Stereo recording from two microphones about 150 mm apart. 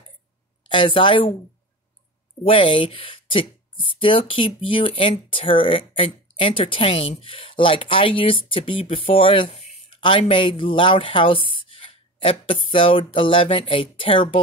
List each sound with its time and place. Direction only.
0.7 s speech: 35° left (ahead or behind)
2.4 s speech: 35° left (ahead or behind)